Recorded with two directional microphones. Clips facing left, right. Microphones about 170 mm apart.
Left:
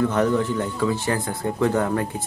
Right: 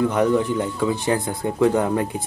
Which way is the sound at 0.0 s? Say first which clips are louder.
Right 2 dB; 10° right (ahead or behind).